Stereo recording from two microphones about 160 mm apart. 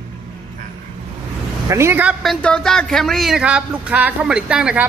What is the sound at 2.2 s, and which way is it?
Speech, 5° left (ahead or behind).